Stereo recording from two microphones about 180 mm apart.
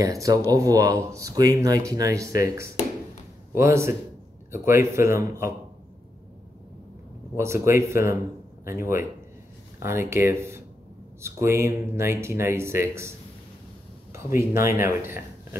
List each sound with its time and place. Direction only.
0.0 s speech: 20° right (ahead or behind)
7.3 s speech: 15° right (ahead or behind)
14.1 s speech: 15° right (ahead or behind)